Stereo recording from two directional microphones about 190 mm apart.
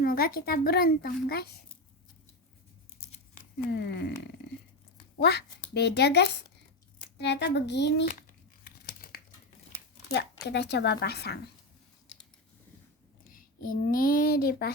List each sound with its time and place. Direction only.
0.0 s speech: 50° left (ahead or behind)
3.7 s a child's voice: 60° left (ahead or behind)
5.1 s a child's voice: 60° left (ahead or behind)
8.9 s crumpling: 50° left (ahead or behind)
10.4 s a child's voice: 65° left (ahead or behind)
13.3 s a child's voice: 50° left (ahead or behind)